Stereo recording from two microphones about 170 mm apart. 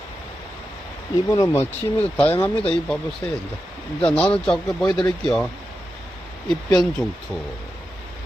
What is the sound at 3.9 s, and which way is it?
Speech, 5° left (ahead or behind).